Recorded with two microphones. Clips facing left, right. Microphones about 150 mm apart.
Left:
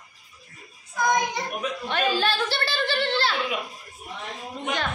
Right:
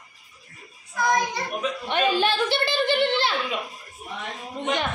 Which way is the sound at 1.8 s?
20° right (ahead or behind).